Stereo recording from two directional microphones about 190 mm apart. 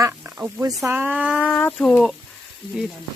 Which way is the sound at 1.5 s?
5° left (ahead or behind).